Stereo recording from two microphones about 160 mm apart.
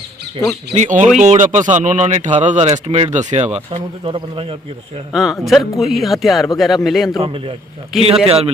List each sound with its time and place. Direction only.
0.7 s speech: 50° right (ahead or behind)
5.1 s speech: centre (ahead or behind)
7.2 s a man's voice: 35° right (ahead or behind)
7.9 s speech: centre (ahead or behind)